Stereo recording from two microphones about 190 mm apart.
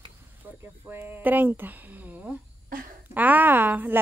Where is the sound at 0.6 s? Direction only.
10° right (ahead or behind).